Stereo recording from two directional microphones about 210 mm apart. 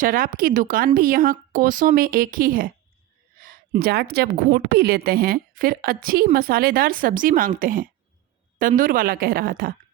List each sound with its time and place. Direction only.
0.0 s a woman's voice: 40° right (ahead or behind)